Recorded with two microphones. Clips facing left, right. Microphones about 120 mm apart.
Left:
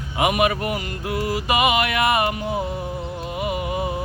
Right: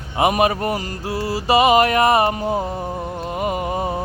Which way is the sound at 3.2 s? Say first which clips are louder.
Right 3 dB; 40° right (ahead or behind).